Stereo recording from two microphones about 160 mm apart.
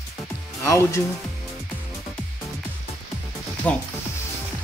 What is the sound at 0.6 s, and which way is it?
Speech, 20° left (ahead or behind).